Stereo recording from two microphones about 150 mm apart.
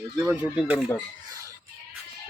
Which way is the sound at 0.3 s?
10° right (ahead or behind).